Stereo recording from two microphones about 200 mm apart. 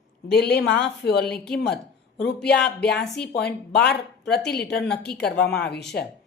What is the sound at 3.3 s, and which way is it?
Speech, 55° left (ahead or behind).